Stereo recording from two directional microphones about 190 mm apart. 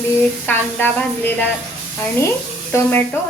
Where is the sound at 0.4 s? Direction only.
10° left (ahead or behind).